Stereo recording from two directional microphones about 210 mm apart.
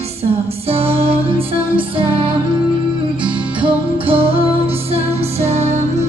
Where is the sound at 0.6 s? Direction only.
30° right (ahead or behind).